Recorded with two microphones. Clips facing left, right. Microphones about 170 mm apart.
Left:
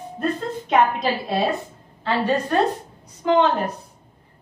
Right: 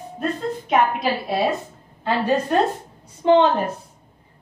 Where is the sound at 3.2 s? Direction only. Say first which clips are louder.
Right 3 dB; 30° right (ahead or behind).